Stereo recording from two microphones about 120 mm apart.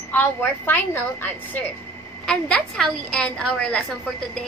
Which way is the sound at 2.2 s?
5° left (ahead or behind).